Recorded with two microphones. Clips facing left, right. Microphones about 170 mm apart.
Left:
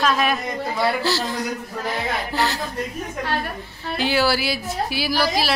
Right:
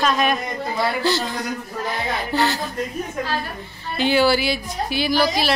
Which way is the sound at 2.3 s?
Centre (ahead or behind).